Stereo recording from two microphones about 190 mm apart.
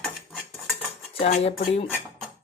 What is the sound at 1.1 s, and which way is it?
Speech, 35° left (ahead or behind).